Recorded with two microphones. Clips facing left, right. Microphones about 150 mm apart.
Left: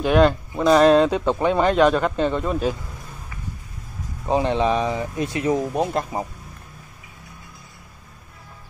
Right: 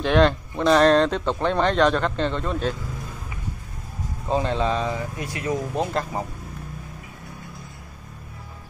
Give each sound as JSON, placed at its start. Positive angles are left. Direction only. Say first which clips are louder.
{"t": 0.0, "sound": "speech", "louder": "left 2 dB", "side_deg": 5}
{"t": 4.3, "sound": "speech", "louder": "left 3 dB", "side_deg": 20}